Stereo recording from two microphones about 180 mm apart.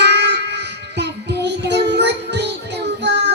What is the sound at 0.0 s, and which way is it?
Child singing, 70° right (ahead or behind).